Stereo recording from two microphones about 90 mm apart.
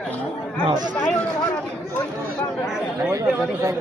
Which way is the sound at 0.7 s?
50° right (ahead or behind).